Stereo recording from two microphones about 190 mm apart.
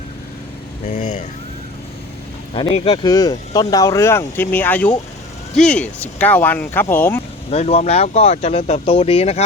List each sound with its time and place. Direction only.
0.9 s speech: 40° left (ahead or behind)
2.6 s speech: 30° left (ahead or behind)
3.0 s speech: 20° left (ahead or behind)
7.5 s speech: 35° left (ahead or behind)